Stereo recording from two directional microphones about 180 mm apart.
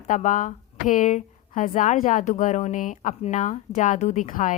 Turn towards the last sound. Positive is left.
turn(degrees=45)  # may be behind; listen again after turning